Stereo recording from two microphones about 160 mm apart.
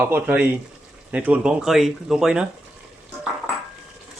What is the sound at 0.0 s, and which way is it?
Speech, 10° right (ahead or behind).